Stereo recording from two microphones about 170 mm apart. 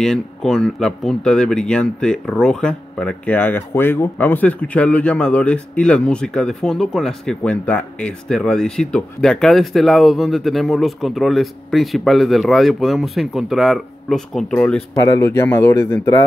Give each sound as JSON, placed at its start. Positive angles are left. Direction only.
{"t": 0.0, "sound": "speech", "side_deg": 5}
{"t": 15.0, "sound": "speech", "side_deg": 20}